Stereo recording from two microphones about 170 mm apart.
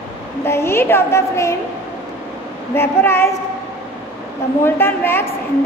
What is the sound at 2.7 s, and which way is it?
Speech, 15° left (ahead or behind).